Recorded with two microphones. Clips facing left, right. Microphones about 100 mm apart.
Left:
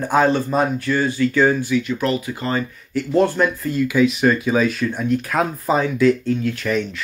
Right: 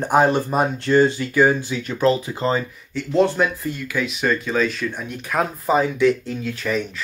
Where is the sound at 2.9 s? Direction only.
10° left (ahead or behind).